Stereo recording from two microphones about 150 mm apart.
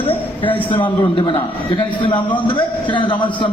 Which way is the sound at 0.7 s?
35° left (ahead or behind).